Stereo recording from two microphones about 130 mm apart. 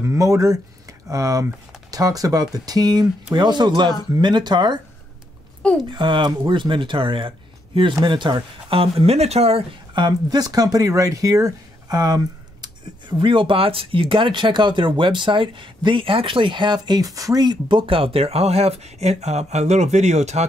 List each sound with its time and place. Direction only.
0.0 s speech: 25° right (ahead or behind)
5.9 s speech: 40° right (ahead or behind)
9.9 s speech: 35° right (ahead or behind)
13.2 s speech: 40° right (ahead or behind); by 20.4 s 60° right (ahead or behind)